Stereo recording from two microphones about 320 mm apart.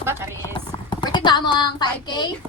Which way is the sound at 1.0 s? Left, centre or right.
Centre.